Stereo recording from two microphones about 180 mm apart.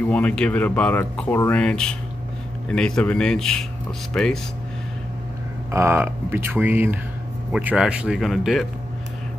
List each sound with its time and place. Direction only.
0.1 s speech: 5° left (ahead or behind)
5.7 s speech: 15° right (ahead or behind)